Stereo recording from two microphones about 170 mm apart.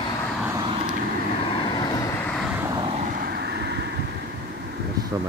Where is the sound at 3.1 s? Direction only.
65° right (ahead or behind); by 3.9 s 85° right.